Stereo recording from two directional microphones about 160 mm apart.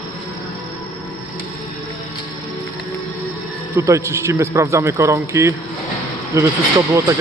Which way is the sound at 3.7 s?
20° right (ahead or behind).